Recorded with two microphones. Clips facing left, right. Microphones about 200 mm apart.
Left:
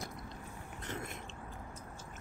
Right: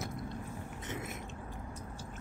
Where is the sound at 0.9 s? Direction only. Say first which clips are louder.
Right 1 dB; 5° right (ahead or behind).